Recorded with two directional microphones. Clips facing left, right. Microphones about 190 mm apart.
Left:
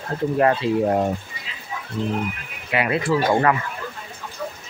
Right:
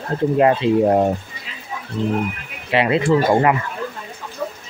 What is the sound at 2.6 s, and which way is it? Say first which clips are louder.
Speech: right 5 dB; 25° right (ahead or behind).